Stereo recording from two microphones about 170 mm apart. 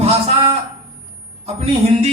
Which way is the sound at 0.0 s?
35° right (ahead or behind).